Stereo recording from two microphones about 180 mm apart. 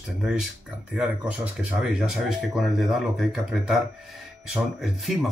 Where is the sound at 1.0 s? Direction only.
5° right (ahead or behind).